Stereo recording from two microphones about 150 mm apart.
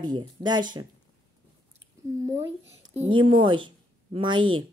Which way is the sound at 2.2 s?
20° right (ahead or behind).